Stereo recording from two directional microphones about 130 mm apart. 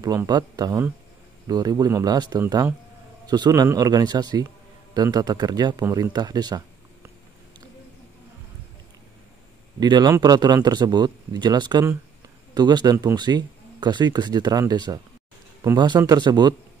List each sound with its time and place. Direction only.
0.3 s speech: 30° right (ahead or behind)
9.8 s speech: 35° right (ahead or behind)